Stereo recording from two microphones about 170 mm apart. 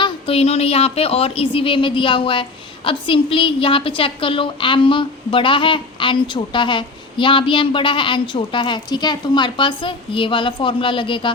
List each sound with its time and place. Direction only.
0.0 s a woman's voice: 35° left (ahead or behind)